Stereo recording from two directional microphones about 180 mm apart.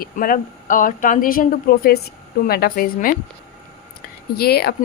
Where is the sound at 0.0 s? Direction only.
50° left (ahead or behind).